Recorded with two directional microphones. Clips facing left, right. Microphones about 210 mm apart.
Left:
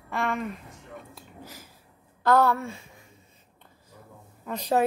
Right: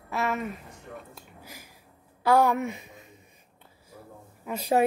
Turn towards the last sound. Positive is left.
turn(degrees=-10)  # may be behind; listen again after turning